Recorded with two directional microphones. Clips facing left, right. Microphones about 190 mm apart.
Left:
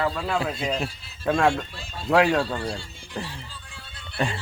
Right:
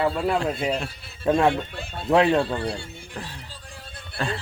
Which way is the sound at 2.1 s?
25° right (ahead or behind).